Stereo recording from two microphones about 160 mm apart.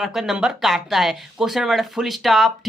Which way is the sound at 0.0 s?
5° right (ahead or behind).